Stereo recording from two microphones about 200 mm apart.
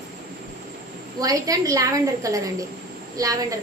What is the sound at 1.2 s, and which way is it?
A woman's voice, 15° right (ahead or behind).